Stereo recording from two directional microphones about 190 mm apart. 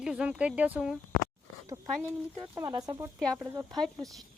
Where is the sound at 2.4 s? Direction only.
15° right (ahead or behind).